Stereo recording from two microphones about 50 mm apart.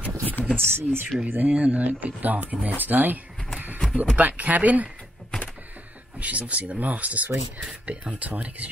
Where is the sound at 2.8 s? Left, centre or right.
Right.